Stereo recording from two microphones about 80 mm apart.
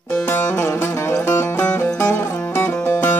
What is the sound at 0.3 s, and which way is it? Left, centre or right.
Music, left.